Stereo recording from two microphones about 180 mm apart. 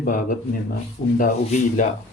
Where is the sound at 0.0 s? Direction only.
50° left (ahead or behind).